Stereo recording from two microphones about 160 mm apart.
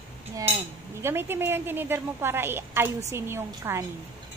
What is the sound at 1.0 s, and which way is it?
A woman's voice, 15° right (ahead or behind).